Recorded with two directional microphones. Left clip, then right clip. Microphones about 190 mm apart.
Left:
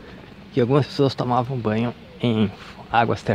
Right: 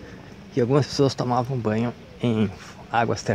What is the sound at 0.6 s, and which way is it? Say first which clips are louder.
Speech: left 1 dB; 5° left (ahead or behind).